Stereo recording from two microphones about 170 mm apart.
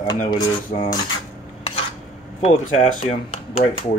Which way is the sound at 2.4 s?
40° left (ahead or behind).